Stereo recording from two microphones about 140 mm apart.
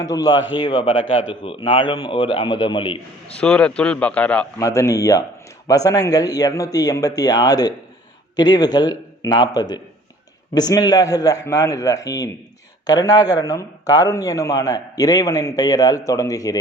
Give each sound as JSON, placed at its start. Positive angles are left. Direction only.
{"t": 0.0, "sound": "a man's voice", "side_deg": 25}
{"t": 3.4, "sound": "speech", "side_deg": 10}
{"t": 4.6, "sound": "speech", "side_deg": 20}